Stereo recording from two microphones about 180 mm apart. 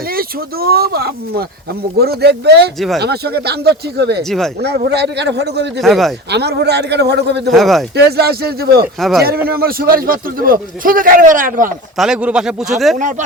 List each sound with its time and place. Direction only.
0.1 s speech: 55° right (ahead or behind)
2.7 s speech: centre (ahead or behind)
3.0 s speech: 60° right (ahead or behind)
4.2 s speech: centre (ahead or behind)
4.6 s a man's voice: 65° right (ahead or behind)
5.8 s speech: centre (ahead or behind)
6.3 s a man's voice: 70° right (ahead or behind)
7.5 s speech: centre (ahead or behind)
7.9 s speech: 65° right (ahead or behind)
9.0 s speech: centre (ahead or behind)
9.2 s a man's voice: 60° right (ahead or behind)
11.9 s speech: 5° right (ahead or behind)
13.0 s a man's voice: 45° right (ahead or behind)